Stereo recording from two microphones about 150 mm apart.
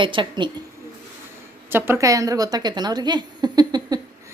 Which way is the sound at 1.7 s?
15° right (ahead or behind).